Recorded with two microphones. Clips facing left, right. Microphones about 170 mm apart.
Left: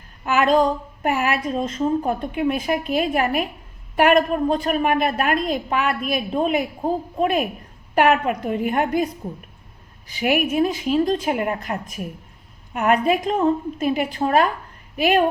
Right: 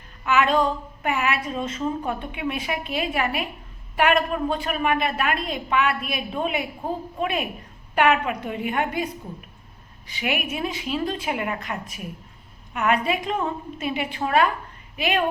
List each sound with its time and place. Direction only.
0.3 s a woman's voice: 40° left (ahead or behind)
10.2 s a woman's voice: 45° left (ahead or behind)